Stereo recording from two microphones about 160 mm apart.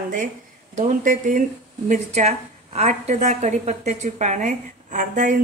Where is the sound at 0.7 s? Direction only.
50° right (ahead or behind).